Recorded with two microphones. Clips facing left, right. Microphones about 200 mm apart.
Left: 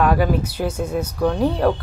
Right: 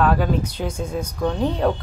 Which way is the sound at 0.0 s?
10° left (ahead or behind).